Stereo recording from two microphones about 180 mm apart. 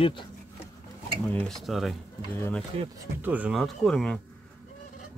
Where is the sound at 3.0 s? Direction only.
10° right (ahead or behind).